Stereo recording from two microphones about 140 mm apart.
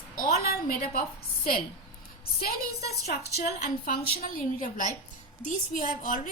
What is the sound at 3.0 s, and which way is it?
A woman's voice, 80° left.